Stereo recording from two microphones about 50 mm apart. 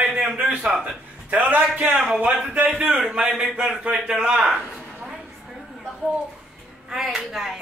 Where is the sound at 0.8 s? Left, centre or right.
Right.